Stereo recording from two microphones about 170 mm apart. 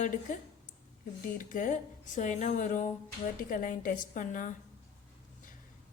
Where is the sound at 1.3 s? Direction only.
50° left (ahead or behind).